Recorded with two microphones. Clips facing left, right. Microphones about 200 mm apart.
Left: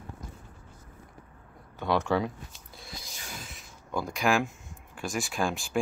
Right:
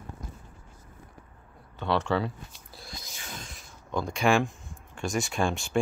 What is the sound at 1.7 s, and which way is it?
Speech, 10° left (ahead or behind).